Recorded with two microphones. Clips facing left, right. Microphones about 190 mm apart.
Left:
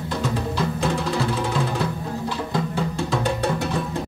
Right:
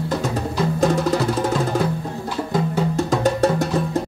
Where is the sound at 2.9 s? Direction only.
40° right (ahead or behind).